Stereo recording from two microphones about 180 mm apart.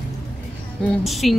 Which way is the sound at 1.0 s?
Centre (ahead or behind).